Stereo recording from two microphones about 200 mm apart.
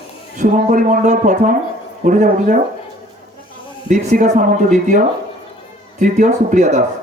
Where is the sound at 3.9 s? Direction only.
35° right (ahead or behind).